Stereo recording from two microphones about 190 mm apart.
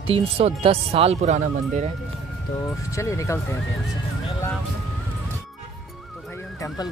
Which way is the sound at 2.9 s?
15° left (ahead or behind).